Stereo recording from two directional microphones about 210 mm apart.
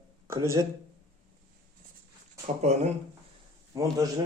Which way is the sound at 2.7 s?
30° right (ahead or behind).